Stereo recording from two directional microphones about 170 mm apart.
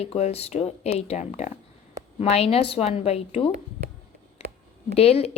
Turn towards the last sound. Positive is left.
turn(degrees=35)  # may be behind; listen again after turning